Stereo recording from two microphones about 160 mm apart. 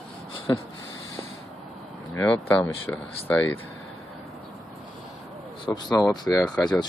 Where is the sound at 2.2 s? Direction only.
10° left (ahead or behind).